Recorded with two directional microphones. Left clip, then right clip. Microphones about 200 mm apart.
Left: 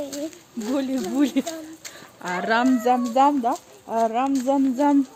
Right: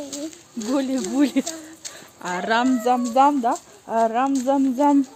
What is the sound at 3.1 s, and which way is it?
Speech, 20° right (ahead or behind).